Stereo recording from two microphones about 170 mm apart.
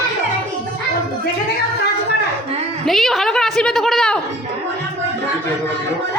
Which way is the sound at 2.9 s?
Centre (ahead or behind).